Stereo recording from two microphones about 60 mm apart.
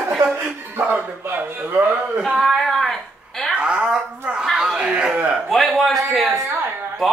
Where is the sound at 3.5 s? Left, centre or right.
Centre.